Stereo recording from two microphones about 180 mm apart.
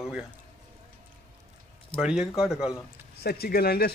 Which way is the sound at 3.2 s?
60° left (ahead or behind).